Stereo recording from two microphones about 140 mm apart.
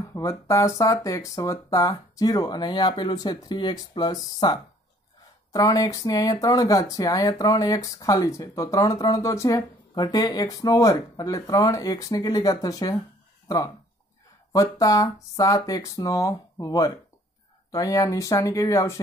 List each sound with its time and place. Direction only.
0.0 s speech: 20° left (ahead or behind)
14.5 s speech: 25° left (ahead or behind)